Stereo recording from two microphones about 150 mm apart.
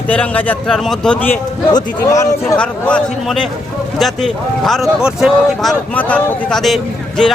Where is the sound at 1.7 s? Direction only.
25° left (ahead or behind).